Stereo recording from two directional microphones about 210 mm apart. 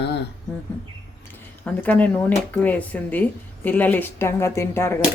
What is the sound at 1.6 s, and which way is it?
Speech, 5° left (ahead or behind).